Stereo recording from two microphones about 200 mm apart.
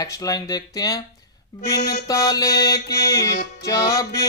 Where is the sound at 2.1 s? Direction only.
15° left (ahead or behind).